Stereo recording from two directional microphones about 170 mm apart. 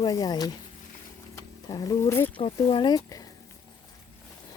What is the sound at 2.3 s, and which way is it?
Speech, 30° left (ahead or behind).